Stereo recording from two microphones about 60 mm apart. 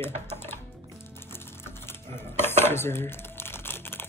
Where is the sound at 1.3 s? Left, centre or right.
Left.